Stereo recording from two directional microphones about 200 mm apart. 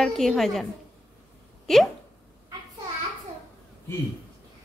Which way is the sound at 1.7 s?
Centre (ahead or behind).